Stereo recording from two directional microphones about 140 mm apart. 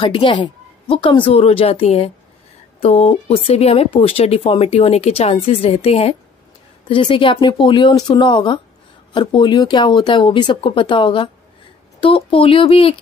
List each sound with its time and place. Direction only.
0.0 s speech: 40° left (ahead or behind)